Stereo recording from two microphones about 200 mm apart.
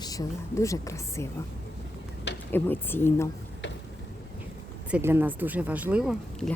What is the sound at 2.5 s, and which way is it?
Speech, 10° left (ahead or behind).